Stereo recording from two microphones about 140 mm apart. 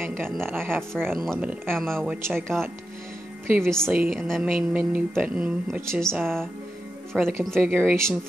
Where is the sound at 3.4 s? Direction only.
15° right (ahead or behind).